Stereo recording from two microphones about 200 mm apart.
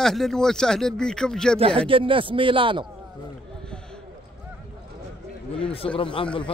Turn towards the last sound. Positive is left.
turn(degrees=25)  # may be behind; listen again after turning